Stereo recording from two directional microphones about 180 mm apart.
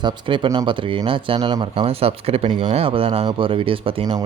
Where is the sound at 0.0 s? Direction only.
25° right (ahead or behind).